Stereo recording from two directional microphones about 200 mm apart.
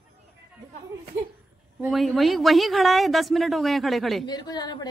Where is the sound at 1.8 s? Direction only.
Centre (ahead or behind).